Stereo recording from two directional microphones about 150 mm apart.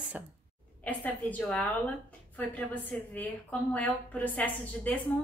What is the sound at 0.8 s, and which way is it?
A woman's voice, 10° left (ahead or behind).